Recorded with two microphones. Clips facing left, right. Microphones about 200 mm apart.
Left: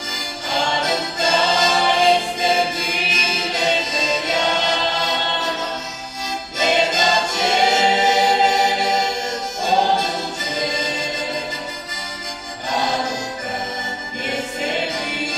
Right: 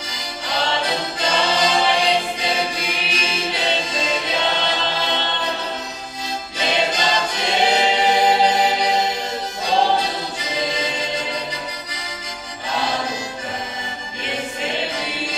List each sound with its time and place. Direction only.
0.5 s music: 45° left (ahead or behind)
6.6 s choir: 45° left (ahead or behind)